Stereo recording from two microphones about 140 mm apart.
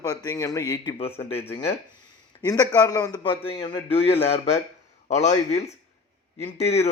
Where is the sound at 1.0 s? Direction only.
45° left (ahead or behind).